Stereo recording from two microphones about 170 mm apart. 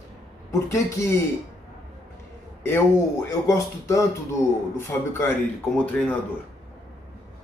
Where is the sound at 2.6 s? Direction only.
10° left (ahead or behind).